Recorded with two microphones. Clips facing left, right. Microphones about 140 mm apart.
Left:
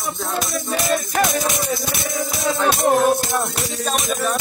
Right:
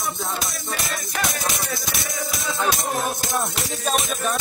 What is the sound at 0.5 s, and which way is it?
Music, 50° left (ahead or behind).